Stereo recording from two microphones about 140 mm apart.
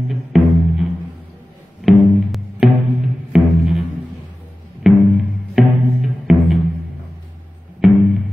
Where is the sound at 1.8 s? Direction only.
Centre (ahead or behind).